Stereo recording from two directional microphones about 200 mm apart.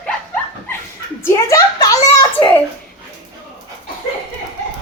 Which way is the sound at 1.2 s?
15° left (ahead or behind).